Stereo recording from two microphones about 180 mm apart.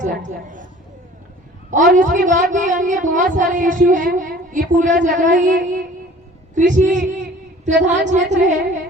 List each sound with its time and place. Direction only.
0.0 s speech: 45° right (ahead or behind)
1.9 s speech: 50° right (ahead or behind)
6.5 s a sound: 45° right (ahead or behind)
7.9 s a woman's voice: 40° right (ahead or behind)